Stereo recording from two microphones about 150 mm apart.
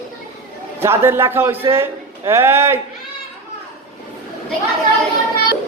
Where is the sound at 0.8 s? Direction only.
15° right (ahead or behind).